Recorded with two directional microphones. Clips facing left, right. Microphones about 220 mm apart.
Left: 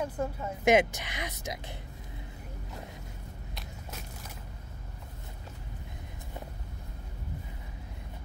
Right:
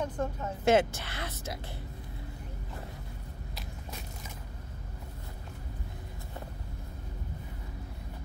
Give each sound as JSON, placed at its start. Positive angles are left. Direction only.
{"t": 0.0, "sound": "speech", "side_deg": 10}